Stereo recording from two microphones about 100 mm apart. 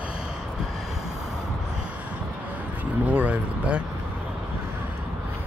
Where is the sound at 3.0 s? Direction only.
15° right (ahead or behind).